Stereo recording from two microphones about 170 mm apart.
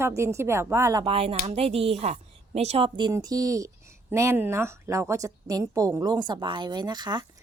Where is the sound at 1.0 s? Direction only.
35° right (ahead or behind).